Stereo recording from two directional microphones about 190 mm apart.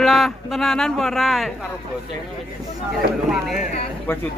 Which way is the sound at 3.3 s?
Centre (ahead or behind).